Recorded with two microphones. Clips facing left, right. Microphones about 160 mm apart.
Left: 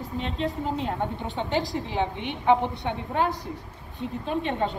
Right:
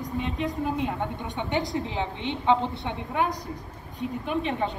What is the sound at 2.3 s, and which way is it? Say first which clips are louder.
Speech: left 1 dB; 15° left (ahead or behind).